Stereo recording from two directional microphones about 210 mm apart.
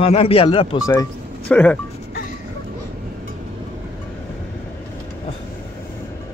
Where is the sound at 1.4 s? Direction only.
5° left (ahead or behind).